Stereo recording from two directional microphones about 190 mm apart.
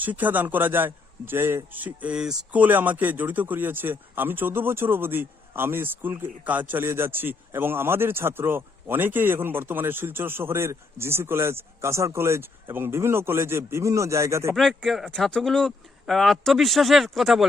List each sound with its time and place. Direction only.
0.0 s a man's voice: 10° right (ahead or behind)
14.5 s speech: centre (ahead or behind)